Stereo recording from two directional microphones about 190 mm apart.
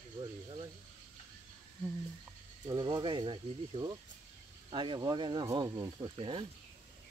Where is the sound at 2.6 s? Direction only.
25° right (ahead or behind).